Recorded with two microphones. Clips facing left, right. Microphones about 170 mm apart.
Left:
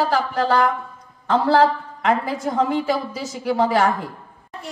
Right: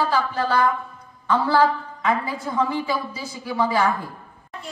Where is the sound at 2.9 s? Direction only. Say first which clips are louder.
Left 3 dB; 90° left.